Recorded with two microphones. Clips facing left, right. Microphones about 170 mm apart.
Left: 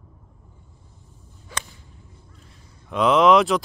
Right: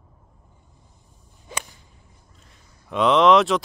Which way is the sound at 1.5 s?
20° right (ahead or behind).